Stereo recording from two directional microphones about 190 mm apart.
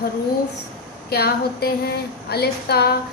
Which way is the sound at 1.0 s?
55° left (ahead or behind).